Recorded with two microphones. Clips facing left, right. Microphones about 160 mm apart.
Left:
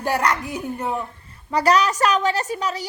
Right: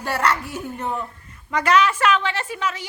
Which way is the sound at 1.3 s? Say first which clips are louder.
Left 1 dB; 35° left (ahead or behind).